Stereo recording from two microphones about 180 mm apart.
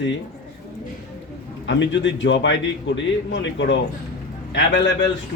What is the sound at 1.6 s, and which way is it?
Speech, 90° left.